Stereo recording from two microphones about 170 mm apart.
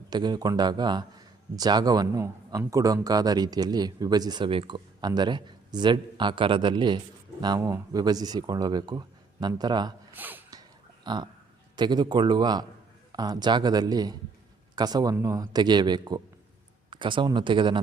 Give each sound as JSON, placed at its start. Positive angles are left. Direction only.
{"t": 0.1, "sound": "a man's voice", "side_deg": -25}
{"t": 10.2, "sound": "a sound", "side_deg": -10}
{"t": 11.0, "sound": "a man's voice", "side_deg": -25}